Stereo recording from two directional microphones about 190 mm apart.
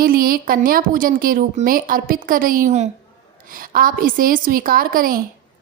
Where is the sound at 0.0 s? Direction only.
50° right (ahead or behind).